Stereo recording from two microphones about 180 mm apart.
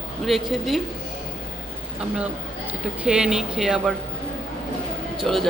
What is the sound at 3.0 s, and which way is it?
Speech, 5° right (ahead or behind).